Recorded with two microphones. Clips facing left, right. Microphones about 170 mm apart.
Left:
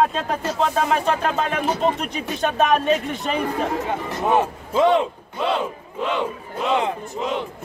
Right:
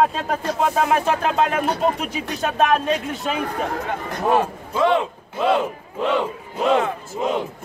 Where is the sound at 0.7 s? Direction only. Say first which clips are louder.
Right 1 dB; 10° right (ahead or behind).